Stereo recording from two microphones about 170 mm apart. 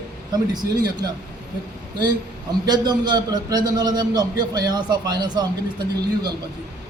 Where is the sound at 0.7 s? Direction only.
20° right (ahead or behind).